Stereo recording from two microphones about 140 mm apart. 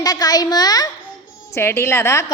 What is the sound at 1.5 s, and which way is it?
Speech, 15° left (ahead or behind).